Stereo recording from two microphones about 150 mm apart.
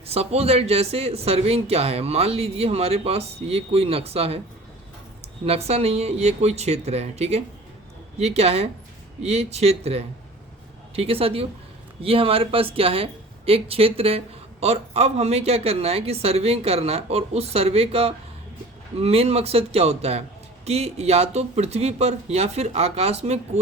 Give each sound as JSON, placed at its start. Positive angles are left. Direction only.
{"t": 0.1, "sound": "speech", "side_deg": -45}
{"t": 5.5, "sound": "speech", "side_deg": -45}